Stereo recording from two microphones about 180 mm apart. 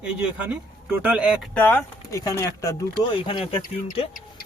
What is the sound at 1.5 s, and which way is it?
Speech, 10° left (ahead or behind).